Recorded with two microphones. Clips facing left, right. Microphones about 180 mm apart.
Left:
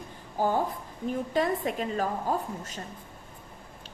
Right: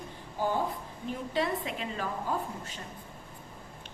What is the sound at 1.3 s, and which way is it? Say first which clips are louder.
A woman's voice: left 3 dB; 45° left (ahead or behind).